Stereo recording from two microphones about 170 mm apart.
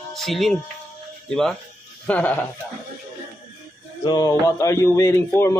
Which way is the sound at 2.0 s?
10° left (ahead or behind).